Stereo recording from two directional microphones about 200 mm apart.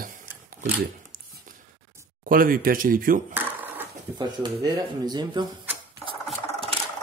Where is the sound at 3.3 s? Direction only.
10° right (ahead or behind).